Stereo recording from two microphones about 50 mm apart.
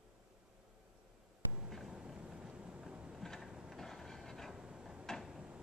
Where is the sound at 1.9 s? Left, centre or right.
Centre.